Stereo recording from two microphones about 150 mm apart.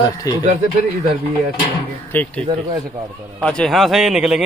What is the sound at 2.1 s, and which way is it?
Speech, 10° left (ahead or behind).